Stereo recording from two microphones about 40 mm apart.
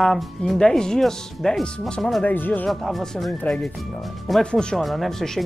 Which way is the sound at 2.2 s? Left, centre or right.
Left.